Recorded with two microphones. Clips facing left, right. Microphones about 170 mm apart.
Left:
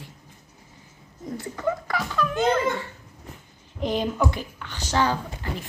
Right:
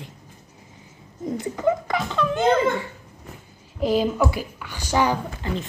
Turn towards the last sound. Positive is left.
turn(degrees=-15)  # may be behind; listen again after turning